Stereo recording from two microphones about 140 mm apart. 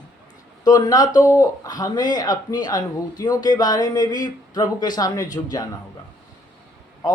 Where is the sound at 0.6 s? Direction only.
25° left (ahead or behind).